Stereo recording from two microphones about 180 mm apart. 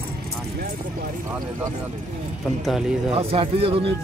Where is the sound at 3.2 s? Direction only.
30° right (ahead or behind).